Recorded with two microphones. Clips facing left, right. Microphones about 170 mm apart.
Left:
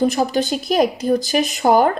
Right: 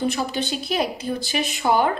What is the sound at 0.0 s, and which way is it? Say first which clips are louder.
Speech: left 6 dB; 40° left (ahead or behind).